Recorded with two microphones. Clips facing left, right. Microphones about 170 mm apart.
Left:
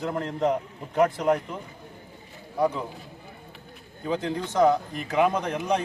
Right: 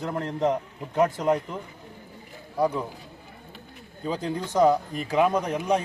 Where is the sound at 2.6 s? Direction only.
10° right (ahead or behind).